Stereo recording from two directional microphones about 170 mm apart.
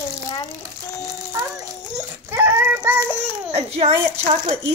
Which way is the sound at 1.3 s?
15° right (ahead or behind).